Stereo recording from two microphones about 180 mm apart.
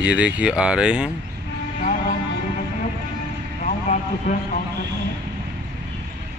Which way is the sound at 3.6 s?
45° left (ahead or behind).